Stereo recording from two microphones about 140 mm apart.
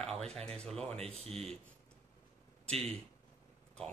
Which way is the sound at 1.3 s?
5° left (ahead or behind).